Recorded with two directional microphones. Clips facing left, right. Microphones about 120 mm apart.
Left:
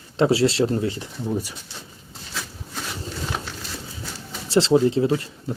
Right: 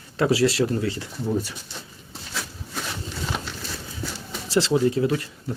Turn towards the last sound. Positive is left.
turn(degrees=25)  # may be behind; listen again after turning